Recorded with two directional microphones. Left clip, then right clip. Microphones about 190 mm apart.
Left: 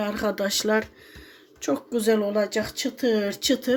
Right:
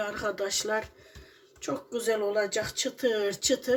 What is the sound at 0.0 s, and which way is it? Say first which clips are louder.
Speech: left 5 dB; 35° left (ahead or behind).